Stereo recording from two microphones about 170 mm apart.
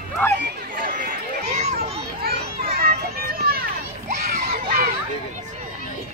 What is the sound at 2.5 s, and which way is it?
Children playing, 60° right (ahead or behind).